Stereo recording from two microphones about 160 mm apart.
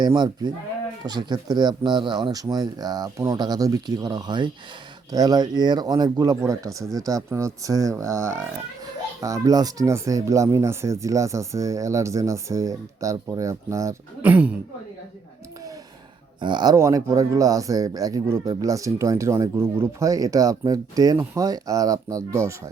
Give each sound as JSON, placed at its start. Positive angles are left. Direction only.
{"t": 0.0, "sound": "speech", "side_deg": -25}
{"t": 14.3, "sound": "speech", "side_deg": -10}
{"t": 16.4, "sound": "speech", "side_deg": -30}